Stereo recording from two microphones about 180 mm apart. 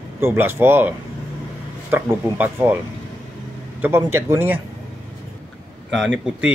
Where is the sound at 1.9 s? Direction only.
10° right (ahead or behind).